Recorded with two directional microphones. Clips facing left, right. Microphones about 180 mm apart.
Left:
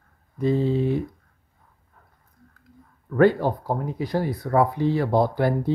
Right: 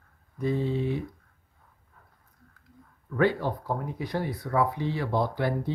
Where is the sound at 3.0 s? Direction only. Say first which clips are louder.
Left 7 dB; 50° left (ahead or behind).